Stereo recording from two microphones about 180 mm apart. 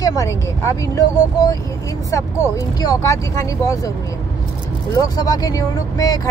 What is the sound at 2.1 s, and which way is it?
Speech, 20° left (ahead or behind).